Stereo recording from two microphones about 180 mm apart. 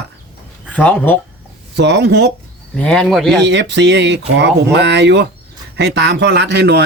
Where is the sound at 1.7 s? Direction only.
70° right (ahead or behind).